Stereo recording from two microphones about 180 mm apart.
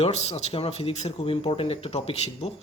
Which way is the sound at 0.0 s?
35° left (ahead or behind).